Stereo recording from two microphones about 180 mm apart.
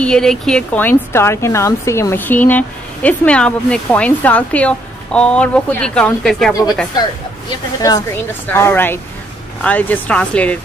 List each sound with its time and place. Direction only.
0.0 s speech: 5° left (ahead or behind)
7.8 s speech: 20° left (ahead or behind)